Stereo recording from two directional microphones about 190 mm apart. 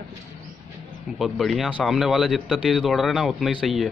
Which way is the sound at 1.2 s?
Centre (ahead or behind).